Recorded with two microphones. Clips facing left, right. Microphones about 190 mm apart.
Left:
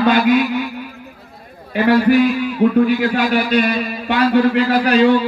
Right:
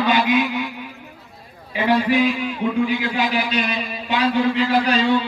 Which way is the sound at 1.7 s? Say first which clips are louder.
Left 6 dB; 60° left (ahead or behind).